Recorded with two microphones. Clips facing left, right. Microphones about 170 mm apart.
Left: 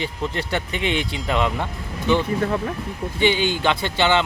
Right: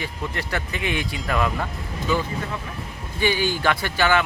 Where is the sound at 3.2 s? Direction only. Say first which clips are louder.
Left 2 dB; 20° left (ahead or behind).